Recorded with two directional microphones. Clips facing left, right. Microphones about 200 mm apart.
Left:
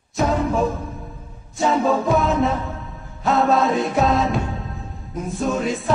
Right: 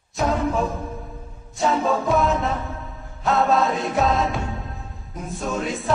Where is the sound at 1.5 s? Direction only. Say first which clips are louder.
Left 2 dB; centre (ahead or behind).